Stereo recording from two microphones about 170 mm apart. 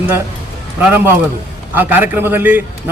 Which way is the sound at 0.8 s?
10° right (ahead or behind).